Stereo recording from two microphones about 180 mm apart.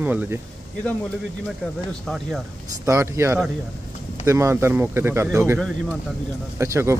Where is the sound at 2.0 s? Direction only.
Centre (ahead or behind).